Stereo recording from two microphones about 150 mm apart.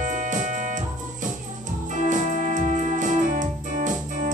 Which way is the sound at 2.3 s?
65° left (ahead or behind).